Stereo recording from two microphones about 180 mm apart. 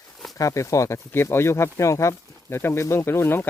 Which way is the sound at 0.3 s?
15° left (ahead or behind).